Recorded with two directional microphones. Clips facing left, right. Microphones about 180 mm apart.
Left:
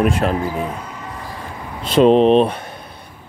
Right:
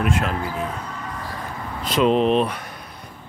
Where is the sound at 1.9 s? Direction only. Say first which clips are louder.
Left 7 dB; 30° left (ahead or behind).